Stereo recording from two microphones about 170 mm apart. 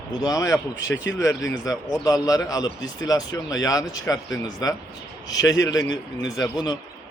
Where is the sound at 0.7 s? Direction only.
90° left.